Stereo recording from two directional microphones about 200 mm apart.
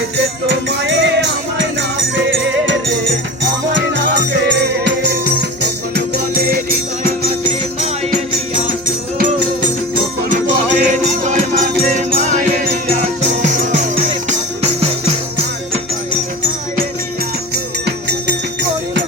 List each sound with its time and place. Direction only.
0.4 s music: 60° right (ahead or behind)
3.9 s music: 60° right (ahead or behind)
9.1 s music: 40° right (ahead or behind)